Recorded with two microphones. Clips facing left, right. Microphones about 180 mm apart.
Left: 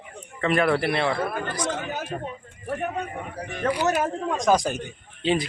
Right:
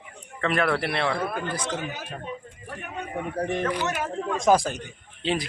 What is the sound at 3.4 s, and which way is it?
Speech, 50° right (ahead or behind).